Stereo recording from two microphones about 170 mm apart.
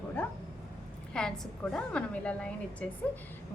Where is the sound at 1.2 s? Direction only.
5° left (ahead or behind).